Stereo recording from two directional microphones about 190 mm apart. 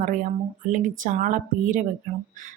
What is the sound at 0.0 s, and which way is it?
A woman's voice, 40° right (ahead or behind).